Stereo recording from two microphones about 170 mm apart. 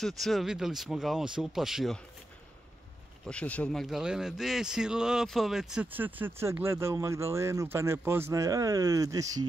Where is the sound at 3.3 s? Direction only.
10° left (ahead or behind).